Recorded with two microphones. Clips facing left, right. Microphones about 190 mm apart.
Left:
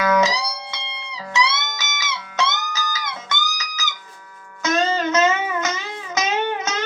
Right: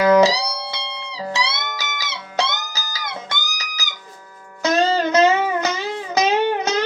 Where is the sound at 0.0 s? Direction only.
35° right (ahead or behind).